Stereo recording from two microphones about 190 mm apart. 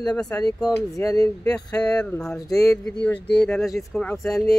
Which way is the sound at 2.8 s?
5° left (ahead or behind).